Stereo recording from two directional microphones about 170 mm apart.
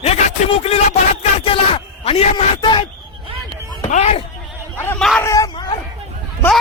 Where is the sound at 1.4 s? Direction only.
35° left (ahead or behind).